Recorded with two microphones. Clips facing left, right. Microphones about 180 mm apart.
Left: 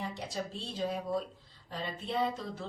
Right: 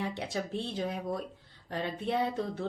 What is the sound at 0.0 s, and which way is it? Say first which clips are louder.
A woman's voice: right 3 dB; 65° right (ahead or behind).